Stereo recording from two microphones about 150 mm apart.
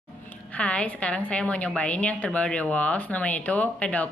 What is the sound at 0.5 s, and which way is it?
A woman's voice, 10° left (ahead or behind).